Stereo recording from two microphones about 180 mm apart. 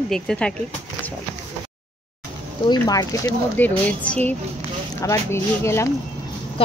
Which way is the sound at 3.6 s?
10° left (ahead or behind).